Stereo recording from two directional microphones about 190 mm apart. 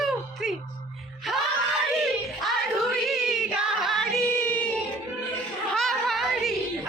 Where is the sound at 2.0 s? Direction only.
Centre (ahead or behind).